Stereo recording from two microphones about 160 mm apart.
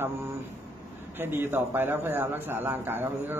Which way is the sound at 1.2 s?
15° right (ahead or behind).